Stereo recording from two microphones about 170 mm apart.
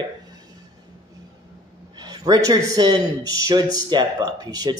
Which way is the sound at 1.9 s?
20° right (ahead or behind).